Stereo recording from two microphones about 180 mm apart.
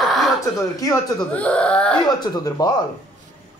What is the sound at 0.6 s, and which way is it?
Speech, 20° left (ahead or behind).